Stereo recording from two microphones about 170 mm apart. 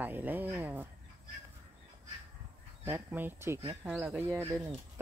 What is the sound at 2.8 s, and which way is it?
Speech, 10° right (ahead or behind).